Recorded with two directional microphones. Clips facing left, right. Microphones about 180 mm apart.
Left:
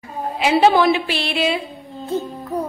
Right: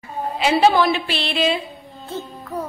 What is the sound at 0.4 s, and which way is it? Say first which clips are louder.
A woman's voice: left 2 dB; 10° left (ahead or behind).